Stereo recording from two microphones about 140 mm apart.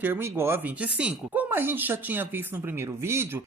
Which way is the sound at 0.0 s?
15° right (ahead or behind).